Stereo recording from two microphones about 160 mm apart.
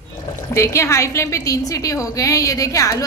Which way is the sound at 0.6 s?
15° left (ahead or behind).